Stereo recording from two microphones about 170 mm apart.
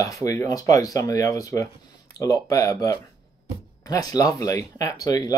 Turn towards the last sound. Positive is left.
turn(degrees=20)  # may be behind; listen again after turning